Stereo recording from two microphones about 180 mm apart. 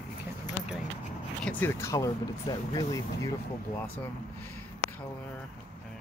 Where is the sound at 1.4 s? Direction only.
10° left (ahead or behind).